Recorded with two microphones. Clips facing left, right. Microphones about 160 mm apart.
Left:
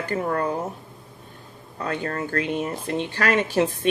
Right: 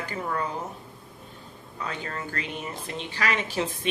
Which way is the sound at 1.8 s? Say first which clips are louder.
Left 7 dB; 50° left (ahead or behind).